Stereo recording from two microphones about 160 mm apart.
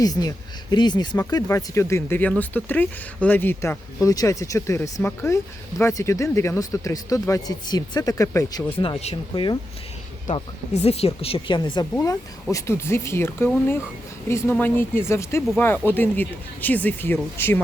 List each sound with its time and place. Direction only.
0.0 s speech: 25° left (ahead or behind)
8.8 s speech: 40° left (ahead or behind)
10.3 s speech: 40° left (ahead or behind); by 17.6 s 15° left (ahead or behind)